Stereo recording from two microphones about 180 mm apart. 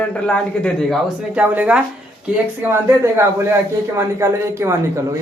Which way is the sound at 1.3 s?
5° right (ahead or behind).